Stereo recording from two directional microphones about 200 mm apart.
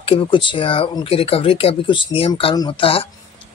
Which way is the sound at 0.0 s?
25° left (ahead or behind).